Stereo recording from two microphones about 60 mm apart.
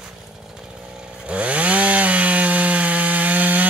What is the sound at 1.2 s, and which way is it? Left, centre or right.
Chainsaw, right.